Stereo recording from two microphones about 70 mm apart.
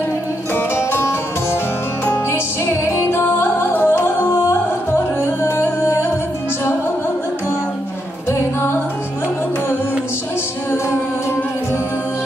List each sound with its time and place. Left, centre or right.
0.6 s music: left
2.6 s music: left
8.3 s music: left